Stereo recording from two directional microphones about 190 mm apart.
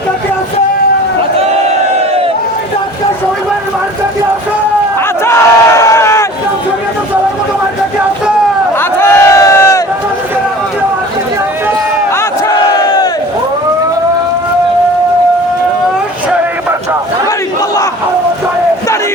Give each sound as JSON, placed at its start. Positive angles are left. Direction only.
{"t": 5.2, "sound": "battle cry", "side_deg": 15}
{"t": 8.8, "sound": "crowd", "side_deg": 15}
{"t": 12.1, "sound": "battle cry", "side_deg": 20}